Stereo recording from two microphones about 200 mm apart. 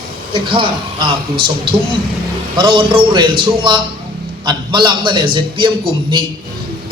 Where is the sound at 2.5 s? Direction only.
25° right (ahead or behind).